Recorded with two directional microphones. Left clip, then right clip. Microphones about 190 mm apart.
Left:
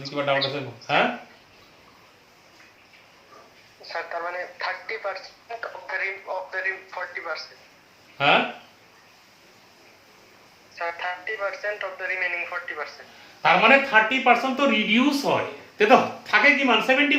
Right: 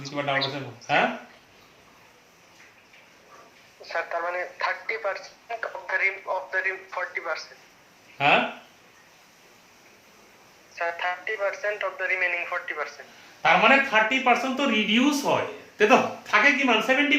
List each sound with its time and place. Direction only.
0.2 s speech: 15° left (ahead or behind)
3.8 s speech: 25° right (ahead or behind)
8.2 s speech: 15° left (ahead or behind)
10.8 s speech: 25° right (ahead or behind)
13.4 s speech: 15° left (ahead or behind)